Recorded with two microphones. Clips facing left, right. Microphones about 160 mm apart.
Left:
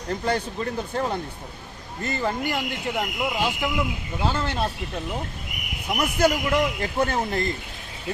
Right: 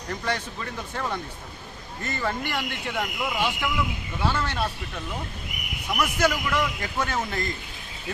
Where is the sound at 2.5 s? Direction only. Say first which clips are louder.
Left 3 dB; 15° left (ahead or behind).